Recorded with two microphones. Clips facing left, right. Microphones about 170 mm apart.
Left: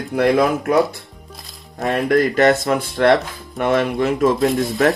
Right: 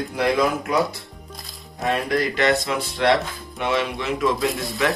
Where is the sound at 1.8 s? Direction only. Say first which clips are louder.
Left 6 dB; 50° left (ahead or behind).